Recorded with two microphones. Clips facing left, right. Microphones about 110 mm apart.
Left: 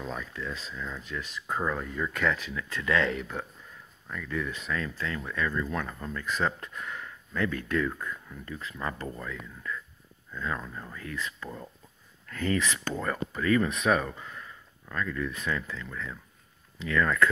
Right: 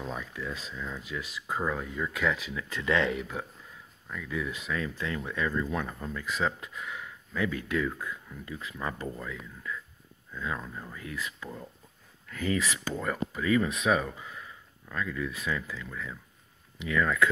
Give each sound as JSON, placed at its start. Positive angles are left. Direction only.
{"t": 0.0, "sound": "speech", "side_deg": -10}
{"t": 2.7, "sound": "speech", "side_deg": -20}